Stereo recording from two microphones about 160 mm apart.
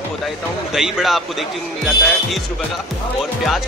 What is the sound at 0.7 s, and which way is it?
Speech, centre (ahead or behind).